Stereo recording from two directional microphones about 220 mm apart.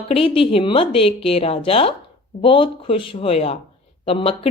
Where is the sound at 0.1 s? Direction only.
25° left (ahead or behind).